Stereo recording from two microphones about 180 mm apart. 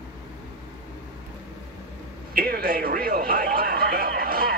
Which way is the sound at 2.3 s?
55° right (ahead or behind).